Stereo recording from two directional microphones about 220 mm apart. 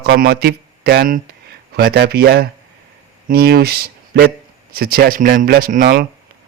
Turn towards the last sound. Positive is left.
turn(degrees=-40)  # may be behind; listen again after turning